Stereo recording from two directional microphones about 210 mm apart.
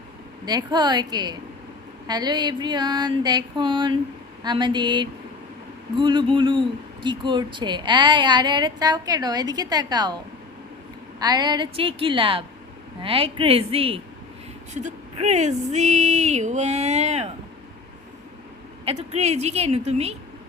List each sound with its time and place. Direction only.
0.4 s speech: 20° right (ahead or behind)
11.2 s speech: 20° right (ahead or behind)
18.9 s speech: 30° right (ahead or behind)